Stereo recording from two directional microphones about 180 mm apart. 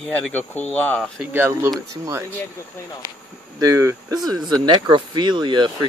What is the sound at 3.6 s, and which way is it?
Speech, 15° right (ahead or behind).